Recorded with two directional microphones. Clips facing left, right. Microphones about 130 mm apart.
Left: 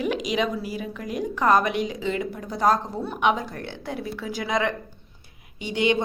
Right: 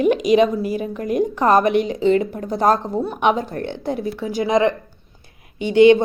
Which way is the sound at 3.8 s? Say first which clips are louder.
Right 6 dB; 25° right (ahead or behind).